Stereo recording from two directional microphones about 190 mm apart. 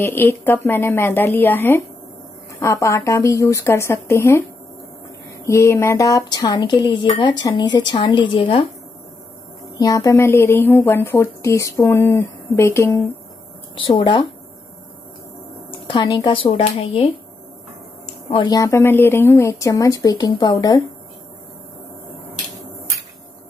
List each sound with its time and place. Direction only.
0.0 s a woman's voice: 10° left (ahead or behind)
9.8 s a woman's voice: 20° left (ahead or behind)
13.7 s speech: 25° left (ahead or behind)
15.9 s a woman's voice: 20° left (ahead or behind)